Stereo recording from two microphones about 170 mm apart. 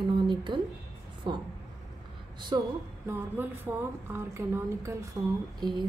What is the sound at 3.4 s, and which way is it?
A woman's voice, 10° right (ahead or behind).